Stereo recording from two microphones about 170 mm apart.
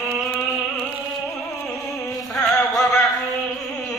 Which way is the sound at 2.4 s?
Centre (ahead or behind).